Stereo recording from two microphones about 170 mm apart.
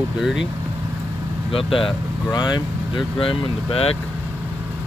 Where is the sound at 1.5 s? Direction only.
30° left (ahead or behind).